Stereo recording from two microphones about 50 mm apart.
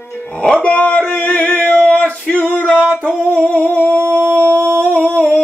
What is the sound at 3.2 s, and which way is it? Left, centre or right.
Singing, left.